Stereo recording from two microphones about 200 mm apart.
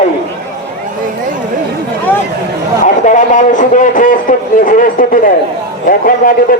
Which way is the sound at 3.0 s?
40° left (ahead or behind).